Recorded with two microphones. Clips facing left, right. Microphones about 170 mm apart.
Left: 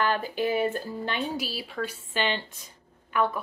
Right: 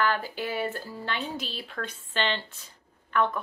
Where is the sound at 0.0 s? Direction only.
20° left (ahead or behind).